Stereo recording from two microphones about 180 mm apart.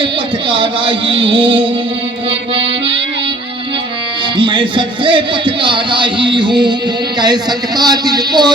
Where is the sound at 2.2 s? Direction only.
30° right (ahead or behind).